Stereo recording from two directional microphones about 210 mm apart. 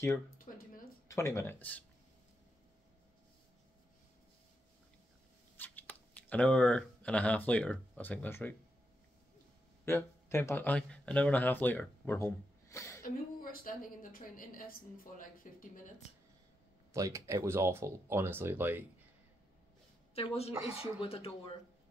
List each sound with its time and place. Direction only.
0.5 s a sound: 35° left (ahead or behind)
1.0 s speech: 15° left (ahead or behind)
5.6 s speech: 10° left (ahead or behind)
9.8 s speech: 10° left (ahead or behind)
13.0 s a woman's voice: 45° left (ahead or behind)
16.9 s speech: 15° right (ahead or behind)
20.2 s speech: 30° left (ahead or behind)
20.5 s speech: 5° right (ahead or behind)
21.0 s speech: 25° left (ahead or behind)